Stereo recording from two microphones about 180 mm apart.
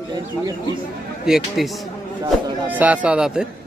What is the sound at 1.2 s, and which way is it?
Speech, 5° right (ahead or behind).